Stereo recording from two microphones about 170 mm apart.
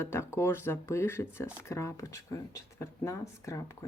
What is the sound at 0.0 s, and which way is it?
Speech, 15° left (ahead or behind).